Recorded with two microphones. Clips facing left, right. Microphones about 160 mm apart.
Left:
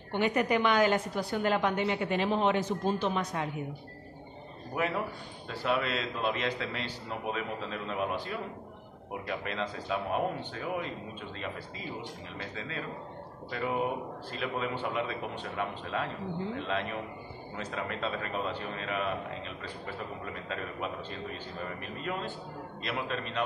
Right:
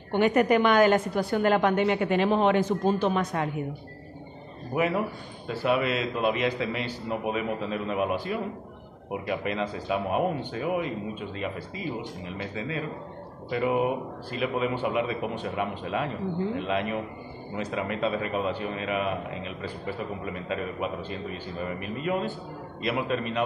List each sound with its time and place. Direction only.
0.1 s a woman's voice: 55° right (ahead or behind)
4.7 s a man's voice: 10° right (ahead or behind)
12.4 s a man's voice: 10° right (ahead or behind)